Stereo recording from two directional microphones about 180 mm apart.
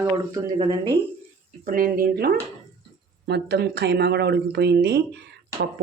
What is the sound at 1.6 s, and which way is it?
Speech, 50° right (ahead or behind).